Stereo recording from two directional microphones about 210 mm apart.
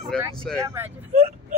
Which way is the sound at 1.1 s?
35° right (ahead or behind).